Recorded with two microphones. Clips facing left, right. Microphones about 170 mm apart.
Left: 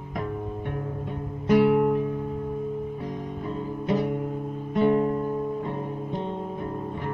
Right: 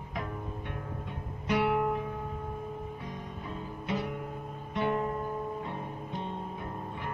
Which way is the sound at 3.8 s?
45° left (ahead or behind).